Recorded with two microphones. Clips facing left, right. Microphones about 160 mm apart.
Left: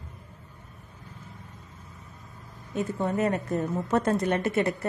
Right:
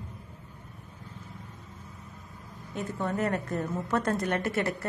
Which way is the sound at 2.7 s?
15° left (ahead or behind).